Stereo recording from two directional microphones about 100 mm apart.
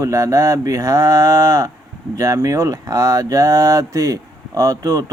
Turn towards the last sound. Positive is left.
turn(degrees=-35)  # may be behind; listen again after turning